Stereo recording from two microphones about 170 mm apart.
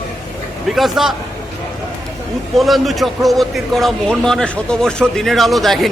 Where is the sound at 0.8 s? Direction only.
Centre (ahead or behind).